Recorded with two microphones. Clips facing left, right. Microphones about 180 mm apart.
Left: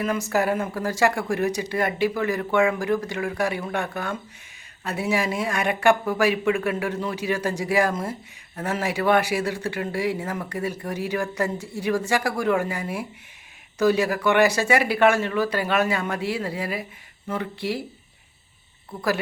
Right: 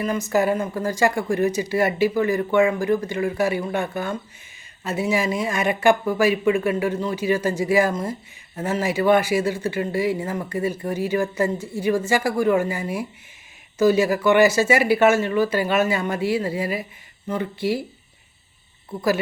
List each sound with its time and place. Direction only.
0.0 s speech: centre (ahead or behind)